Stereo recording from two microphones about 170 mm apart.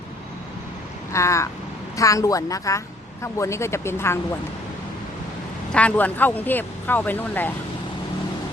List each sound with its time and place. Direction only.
1.1 s a woman's voice: 15° left (ahead or behind)
5.7 s speech: 10° left (ahead or behind)